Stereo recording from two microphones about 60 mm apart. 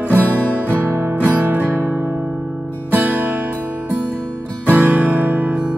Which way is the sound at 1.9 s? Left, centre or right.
Right.